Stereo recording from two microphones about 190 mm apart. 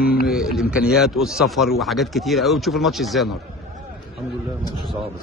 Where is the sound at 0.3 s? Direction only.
Centre (ahead or behind).